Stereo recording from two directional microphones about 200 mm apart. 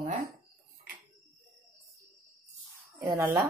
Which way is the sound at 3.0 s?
20° right (ahead or behind).